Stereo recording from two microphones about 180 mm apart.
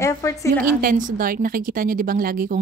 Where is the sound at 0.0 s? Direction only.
15° left (ahead or behind).